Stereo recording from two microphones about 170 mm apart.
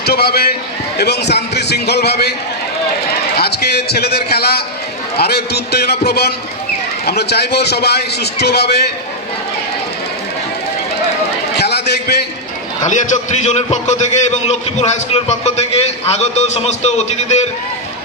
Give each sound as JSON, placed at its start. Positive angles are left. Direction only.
{"t": 0.0, "sound": "a man's voice", "side_deg": 70}
{"t": 3.3, "sound": "a man's voice", "side_deg": 70}
{"t": 11.5, "sound": "a sound", "side_deg": 75}
{"t": 12.8, "sound": "a man's voice", "side_deg": 45}